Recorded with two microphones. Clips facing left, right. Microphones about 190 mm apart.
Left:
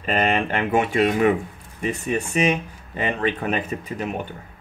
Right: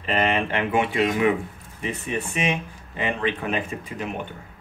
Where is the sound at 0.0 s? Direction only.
45° left (ahead or behind).